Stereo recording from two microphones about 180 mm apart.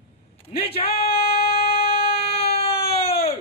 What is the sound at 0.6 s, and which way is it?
Speech, 30° left (ahead or behind).